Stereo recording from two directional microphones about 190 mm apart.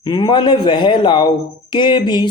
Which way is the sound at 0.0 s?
25° left (ahead or behind).